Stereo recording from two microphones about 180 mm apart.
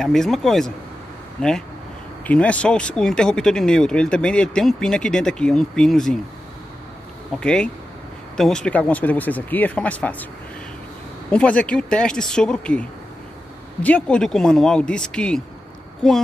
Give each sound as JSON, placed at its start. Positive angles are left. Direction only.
{"t": 0.0, "sound": "speech", "side_deg": 0}
{"t": 7.3, "sound": "speech", "side_deg": 5}
{"t": 11.2, "sound": "speech", "side_deg": 5}
{"t": 13.8, "sound": "speech", "side_deg": 5}